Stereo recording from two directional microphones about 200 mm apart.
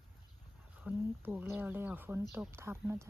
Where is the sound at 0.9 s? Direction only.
10° right (ahead or behind).